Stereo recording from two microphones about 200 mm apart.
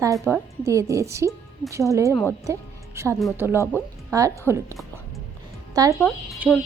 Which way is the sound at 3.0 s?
15° right (ahead or behind).